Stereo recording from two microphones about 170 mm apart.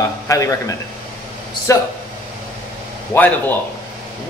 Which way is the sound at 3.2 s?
10° left (ahead or behind).